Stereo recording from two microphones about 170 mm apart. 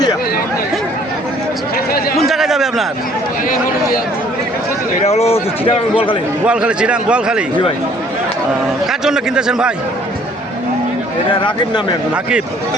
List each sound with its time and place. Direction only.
2.1 s a sound: centre (ahead or behind)
3.5 s speech: 60° left (ahead or behind)
5.0 s a man's voice: 35° left (ahead or behind)
6.4 s a man's voice: 5° right (ahead or behind)
8.9 s a man's voice: 5° right (ahead or behind)